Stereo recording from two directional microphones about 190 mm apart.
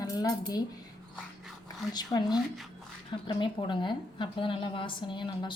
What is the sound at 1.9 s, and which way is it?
A woman's voice, 20° left (ahead or behind).